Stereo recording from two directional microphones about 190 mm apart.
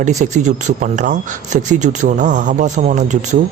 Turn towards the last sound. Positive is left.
turn(degrees=-40)  # may be behind; listen again after turning